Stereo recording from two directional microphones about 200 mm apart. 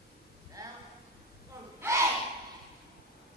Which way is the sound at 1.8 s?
15° right (ahead or behind).